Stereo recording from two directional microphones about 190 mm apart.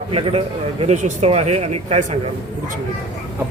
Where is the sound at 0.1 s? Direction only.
30° right (ahead or behind).